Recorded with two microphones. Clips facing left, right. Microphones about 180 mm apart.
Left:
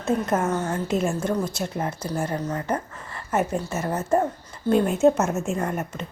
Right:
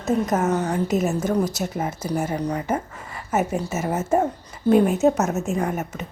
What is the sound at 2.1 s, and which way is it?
A woman's voice, 10° right (ahead or behind).